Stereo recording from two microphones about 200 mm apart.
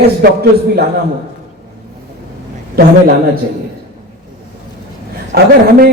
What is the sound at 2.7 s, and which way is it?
Speech, 50° right (ahead or behind).